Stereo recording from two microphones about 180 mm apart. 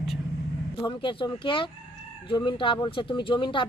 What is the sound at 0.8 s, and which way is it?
Speech, 25° left (ahead or behind).